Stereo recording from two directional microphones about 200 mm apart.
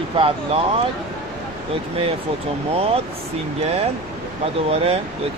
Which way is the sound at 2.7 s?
30° right (ahead or behind).